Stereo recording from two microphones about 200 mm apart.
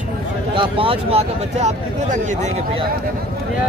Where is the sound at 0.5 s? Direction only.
25° right (ahead or behind).